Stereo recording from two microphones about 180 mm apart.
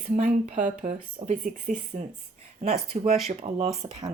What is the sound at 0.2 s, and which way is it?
Speech, 45° right (ahead or behind).